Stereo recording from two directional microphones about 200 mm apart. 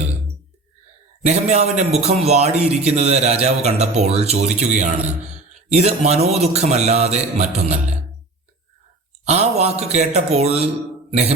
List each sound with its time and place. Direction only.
1.2 s speech: 35° right (ahead or behind)
9.2 s speech: 35° right (ahead or behind)
11.1 s a sound: 30° right (ahead or behind)